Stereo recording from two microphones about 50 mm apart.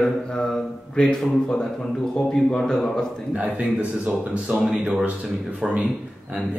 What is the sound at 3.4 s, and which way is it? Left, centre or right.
Speech, right.